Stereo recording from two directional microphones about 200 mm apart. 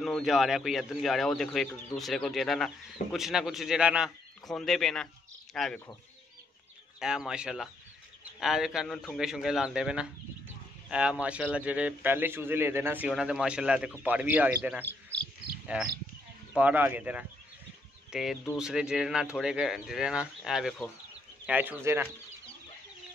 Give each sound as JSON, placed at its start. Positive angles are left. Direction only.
{"t": 0.0, "sound": "speech", "side_deg": 0}
{"t": 7.0, "sound": "a man's voice", "side_deg": -5}
{"t": 16.5, "sound": "a man's voice", "side_deg": -5}